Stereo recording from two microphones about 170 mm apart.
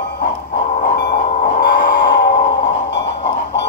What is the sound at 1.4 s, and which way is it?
Music, 55° left (ahead or behind).